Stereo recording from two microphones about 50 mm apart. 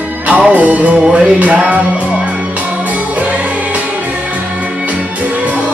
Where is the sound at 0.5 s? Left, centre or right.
Right.